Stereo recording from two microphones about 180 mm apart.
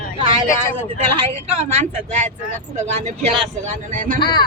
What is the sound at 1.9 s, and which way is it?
Speech, 40° right (ahead or behind).